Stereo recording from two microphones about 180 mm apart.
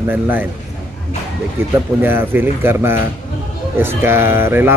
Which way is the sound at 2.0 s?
10° right (ahead or behind).